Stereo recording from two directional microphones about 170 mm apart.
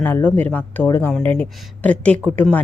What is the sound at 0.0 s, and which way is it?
A woman's voice, 10° left (ahead or behind).